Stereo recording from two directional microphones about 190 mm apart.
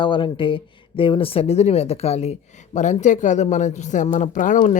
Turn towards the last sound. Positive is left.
turn(degrees=40)  # may be behind; listen again after turning